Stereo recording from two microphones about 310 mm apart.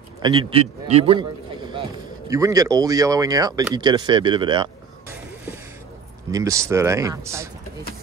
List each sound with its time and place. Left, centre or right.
0.2 s speech: centre
6.3 s speech: centre